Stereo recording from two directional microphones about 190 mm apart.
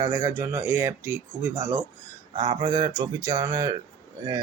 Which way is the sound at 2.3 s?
25° right (ahead or behind).